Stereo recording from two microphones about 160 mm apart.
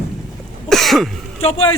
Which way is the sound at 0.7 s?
Centre (ahead or behind).